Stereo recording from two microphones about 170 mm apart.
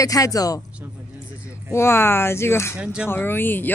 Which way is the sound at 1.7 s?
15° left (ahead or behind).